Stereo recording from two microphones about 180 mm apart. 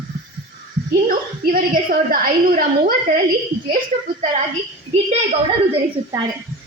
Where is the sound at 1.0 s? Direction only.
55° right (ahead or behind).